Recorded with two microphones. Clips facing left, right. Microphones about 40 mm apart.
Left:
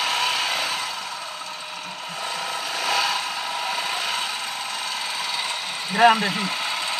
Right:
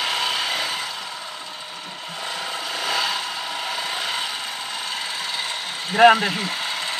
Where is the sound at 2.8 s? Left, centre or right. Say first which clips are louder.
Left 1 dB; centre.